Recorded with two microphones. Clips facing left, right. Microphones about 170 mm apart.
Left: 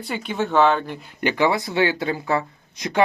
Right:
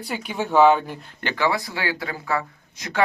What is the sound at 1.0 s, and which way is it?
Speech, 15° left (ahead or behind).